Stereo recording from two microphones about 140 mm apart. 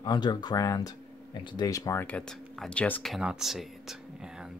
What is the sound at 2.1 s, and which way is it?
Speech, 5° left (ahead or behind).